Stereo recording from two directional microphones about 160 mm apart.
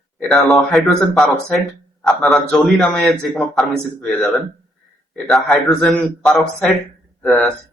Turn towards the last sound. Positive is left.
turn(degrees=0)  # may be behind; listen again after turning